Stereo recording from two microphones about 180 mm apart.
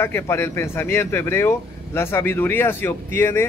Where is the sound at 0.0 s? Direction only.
15° left (ahead or behind).